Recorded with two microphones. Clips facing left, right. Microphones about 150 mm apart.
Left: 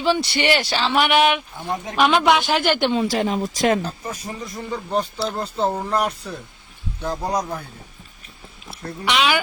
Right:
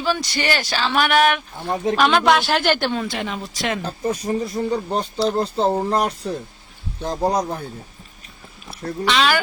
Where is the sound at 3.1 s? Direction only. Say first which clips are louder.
Left 6 dB; 35° left (ahead or behind).